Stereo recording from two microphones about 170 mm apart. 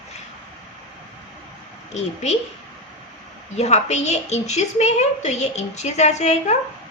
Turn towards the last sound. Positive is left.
turn(degrees=40)  # may be behind; listen again after turning